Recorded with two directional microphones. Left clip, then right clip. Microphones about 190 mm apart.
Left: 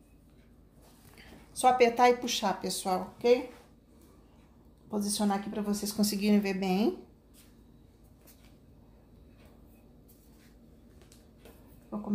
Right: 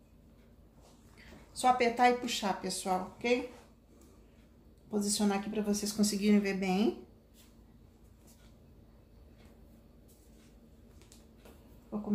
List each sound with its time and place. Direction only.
1.6 s speech: 35° left (ahead or behind)
4.8 s a woman's voice: 25° left (ahead or behind)
11.9 s a sound: 30° left (ahead or behind)